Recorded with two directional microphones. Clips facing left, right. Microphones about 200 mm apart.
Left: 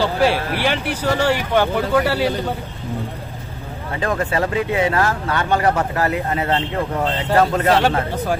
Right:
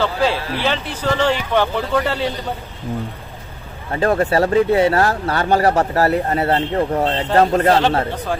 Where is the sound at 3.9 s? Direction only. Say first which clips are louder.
Right 5 dB; 35° right (ahead or behind).